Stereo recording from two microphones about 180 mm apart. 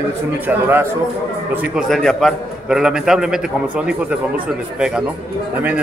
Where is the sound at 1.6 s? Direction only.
Centre (ahead or behind).